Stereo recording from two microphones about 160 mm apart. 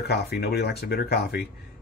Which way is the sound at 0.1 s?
85° left.